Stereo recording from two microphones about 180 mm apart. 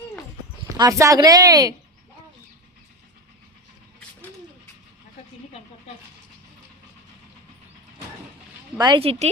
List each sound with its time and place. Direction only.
0.8 s speech: 15° right (ahead or behind)
8.8 s speech: 30° right (ahead or behind)